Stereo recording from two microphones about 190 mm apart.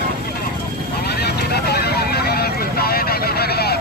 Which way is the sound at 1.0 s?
55° left (ahead or behind).